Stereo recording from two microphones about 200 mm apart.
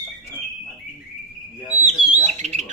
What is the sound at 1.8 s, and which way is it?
Bird, 35° right (ahead or behind).